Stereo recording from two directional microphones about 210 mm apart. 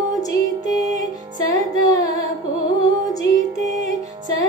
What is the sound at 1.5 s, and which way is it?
Music, 15° left (ahead or behind).